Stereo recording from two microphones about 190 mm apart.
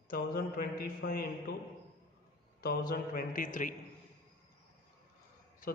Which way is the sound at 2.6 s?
50° left (ahead or behind).